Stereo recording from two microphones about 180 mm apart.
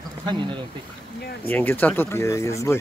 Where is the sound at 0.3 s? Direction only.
25° right (ahead or behind).